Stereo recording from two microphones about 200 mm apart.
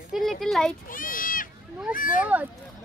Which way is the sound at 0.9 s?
45° left (ahead or behind).